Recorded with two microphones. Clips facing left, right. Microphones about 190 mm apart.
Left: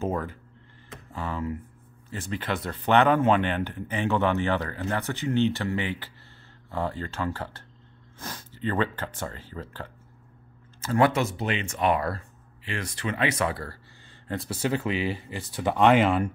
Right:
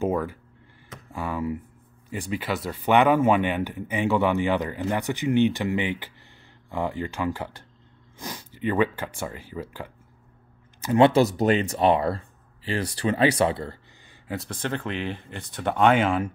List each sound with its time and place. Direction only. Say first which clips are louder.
0.0 s speech: right 4 dB; 10° right (ahead or behind)
14.2 s speech: left 2 dB; centre (ahead or behind)